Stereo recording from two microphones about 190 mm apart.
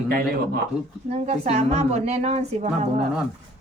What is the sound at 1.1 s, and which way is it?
A woman's voice, 35° right (ahead or behind).